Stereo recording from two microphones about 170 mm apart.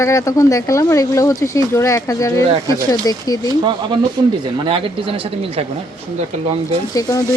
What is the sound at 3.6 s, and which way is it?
Speech, 25° right (ahead or behind).